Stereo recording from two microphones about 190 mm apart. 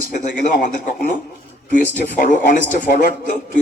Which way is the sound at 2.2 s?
45° left (ahead or behind).